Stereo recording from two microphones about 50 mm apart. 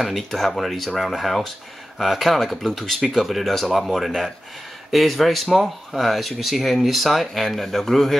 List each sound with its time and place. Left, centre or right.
0.0 s speech: centre